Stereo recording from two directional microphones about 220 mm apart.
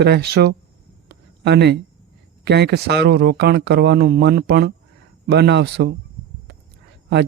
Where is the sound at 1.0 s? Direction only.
50° right (ahead or behind).